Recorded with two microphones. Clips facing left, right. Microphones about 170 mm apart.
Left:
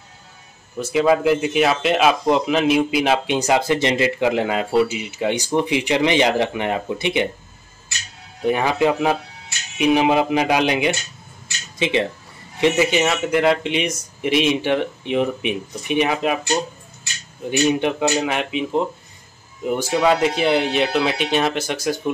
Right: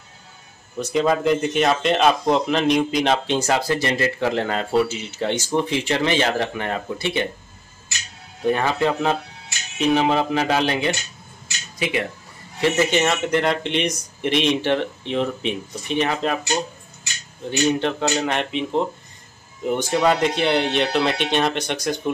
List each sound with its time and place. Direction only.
0.7 s speech: 5° left (ahead or behind)
8.5 s speech: 15° left (ahead or behind)
12.5 s speech: 15° left (ahead or behind)
17.5 s speech: 15° left (ahead or behind)